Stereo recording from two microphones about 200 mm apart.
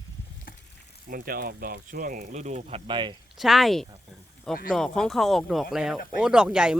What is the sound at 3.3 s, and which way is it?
Speech, centre (ahead or behind).